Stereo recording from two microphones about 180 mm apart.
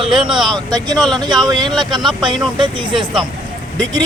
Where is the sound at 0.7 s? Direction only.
20° right (ahead or behind).